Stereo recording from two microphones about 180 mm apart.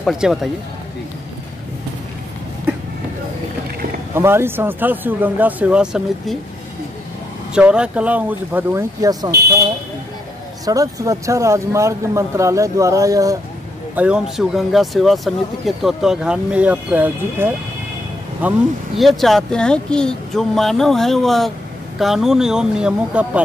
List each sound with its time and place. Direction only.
0.0 s speech: centre (ahead or behind)
4.1 s speech: 15° right (ahead or behind)
7.5 s speech: 5° right (ahead or behind)
10.6 s speech: 20° right (ahead or behind)
13.9 s speech: 5° right (ahead or behind)